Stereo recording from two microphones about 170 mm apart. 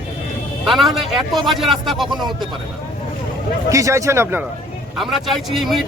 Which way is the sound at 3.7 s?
20° right (ahead or behind).